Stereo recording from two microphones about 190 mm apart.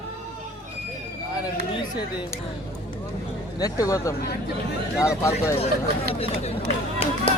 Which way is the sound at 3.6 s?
15° left (ahead or behind).